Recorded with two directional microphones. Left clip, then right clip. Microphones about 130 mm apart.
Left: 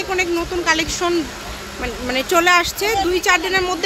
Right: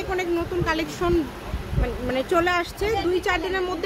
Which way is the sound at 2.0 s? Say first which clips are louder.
Left 6 dB; 20° left (ahead or behind).